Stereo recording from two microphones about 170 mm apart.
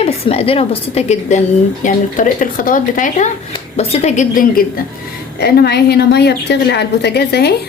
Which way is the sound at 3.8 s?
40° left (ahead or behind).